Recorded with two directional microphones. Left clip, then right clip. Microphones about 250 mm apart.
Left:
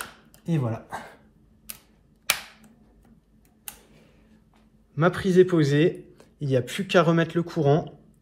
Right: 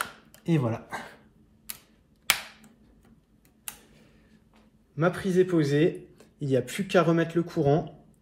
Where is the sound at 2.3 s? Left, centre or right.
Centre.